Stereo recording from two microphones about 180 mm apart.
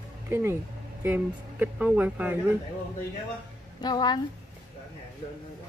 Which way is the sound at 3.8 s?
25° left (ahead or behind).